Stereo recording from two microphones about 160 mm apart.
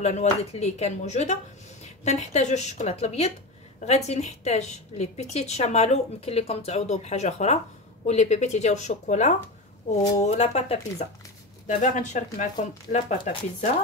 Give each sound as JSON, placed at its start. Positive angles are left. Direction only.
{"t": 0.0, "sound": "a woman's voice", "side_deg": 45}
{"t": 11.6, "sound": "a woman's voice", "side_deg": 50}